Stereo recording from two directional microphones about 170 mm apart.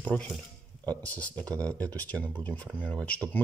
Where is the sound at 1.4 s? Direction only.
20° right (ahead or behind).